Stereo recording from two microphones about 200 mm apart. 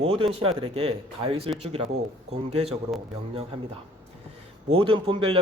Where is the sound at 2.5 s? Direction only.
30° right (ahead or behind).